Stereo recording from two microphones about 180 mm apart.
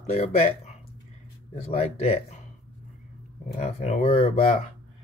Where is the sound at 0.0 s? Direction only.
35° left (ahead or behind).